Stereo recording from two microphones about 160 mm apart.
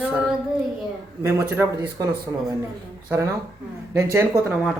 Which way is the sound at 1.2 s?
15° right (ahead or behind).